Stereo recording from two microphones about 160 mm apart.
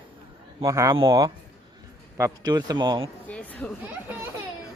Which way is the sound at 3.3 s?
10° left (ahead or behind).